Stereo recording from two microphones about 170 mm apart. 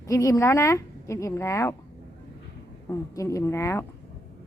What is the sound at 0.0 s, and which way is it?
Speech, 20° left (ahead or behind).